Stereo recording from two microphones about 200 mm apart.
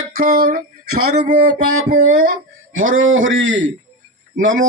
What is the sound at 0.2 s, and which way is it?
Speech, 45° right (ahead or behind).